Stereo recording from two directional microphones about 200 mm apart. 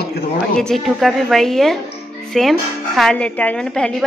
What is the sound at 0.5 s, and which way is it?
A woman's voice, centre (ahead or behind).